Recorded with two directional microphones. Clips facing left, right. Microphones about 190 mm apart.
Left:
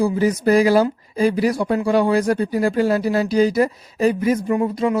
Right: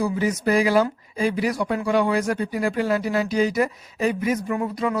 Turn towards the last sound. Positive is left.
turn(degrees=25)  # may be behind; listen again after turning